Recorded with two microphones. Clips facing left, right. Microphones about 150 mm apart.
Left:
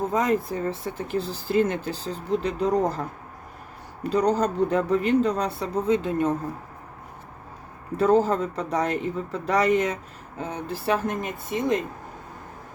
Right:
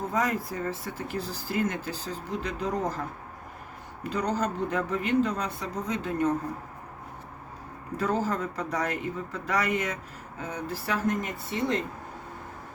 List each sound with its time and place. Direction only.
0.1 s speech: 25° left (ahead or behind)
4.1 s speech: 35° left (ahead or behind)
7.9 s speech: 30° left (ahead or behind)